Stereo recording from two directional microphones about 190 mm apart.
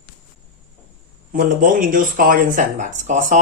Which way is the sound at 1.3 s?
50° right (ahead or behind).